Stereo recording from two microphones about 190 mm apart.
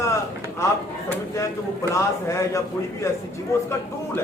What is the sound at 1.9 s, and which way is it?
A man's voice, 15° left (ahead or behind).